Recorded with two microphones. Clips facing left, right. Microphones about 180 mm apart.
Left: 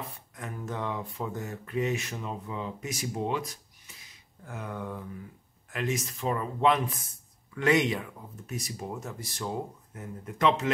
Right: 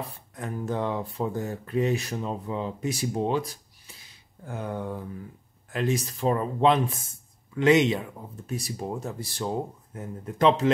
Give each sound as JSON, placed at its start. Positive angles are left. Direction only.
{"t": 0.0, "sound": "speech", "side_deg": -35}